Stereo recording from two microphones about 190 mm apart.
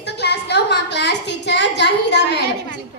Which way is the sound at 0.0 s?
60° left (ahead or behind).